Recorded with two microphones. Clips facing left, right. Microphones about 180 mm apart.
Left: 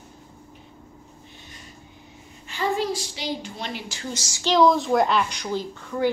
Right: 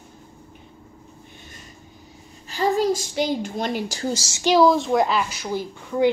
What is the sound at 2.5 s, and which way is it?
A woman's voice, 40° right (ahead or behind).